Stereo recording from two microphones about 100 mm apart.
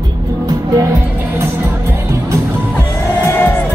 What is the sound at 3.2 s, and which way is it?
Music, 20° left (ahead or behind).